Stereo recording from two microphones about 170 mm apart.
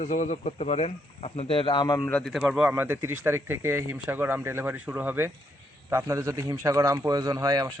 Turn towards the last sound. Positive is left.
turn(degrees=-20)  # may be behind; listen again after turning